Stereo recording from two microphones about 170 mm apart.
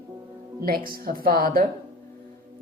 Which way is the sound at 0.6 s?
60° right (ahead or behind).